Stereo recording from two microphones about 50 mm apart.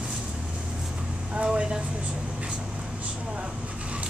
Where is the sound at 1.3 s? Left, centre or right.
Right.